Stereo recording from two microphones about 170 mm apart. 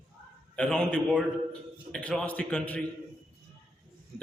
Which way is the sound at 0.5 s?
5° left (ahead or behind).